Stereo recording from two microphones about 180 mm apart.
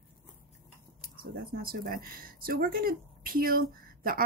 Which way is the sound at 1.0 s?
55° right (ahead or behind).